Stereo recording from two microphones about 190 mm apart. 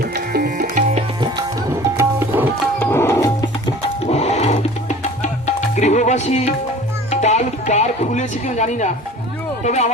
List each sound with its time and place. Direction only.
0.0 s tabla: 55° right (ahead or behind)
2.0 s tabla: 10° right (ahead or behind)
2.7 s music: 10° left (ahead or behind)
4.0 s music: 35° left (ahead or behind)
7.1 s speech: 40° left (ahead or behind)